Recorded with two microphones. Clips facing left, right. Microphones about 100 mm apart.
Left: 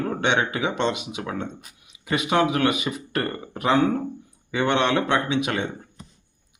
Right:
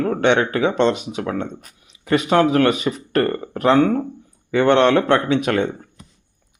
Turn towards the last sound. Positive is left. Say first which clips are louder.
# right 6 dB
turn(degrees=-50)  # may be behind; listen again after turning